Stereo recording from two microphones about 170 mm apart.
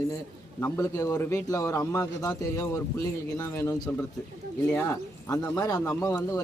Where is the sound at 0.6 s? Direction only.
15° left (ahead or behind).